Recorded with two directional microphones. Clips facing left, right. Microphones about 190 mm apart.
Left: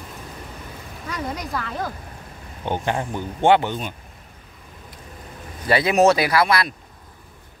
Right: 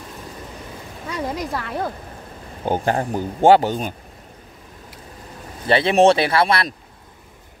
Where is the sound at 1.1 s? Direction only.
25° right (ahead or behind).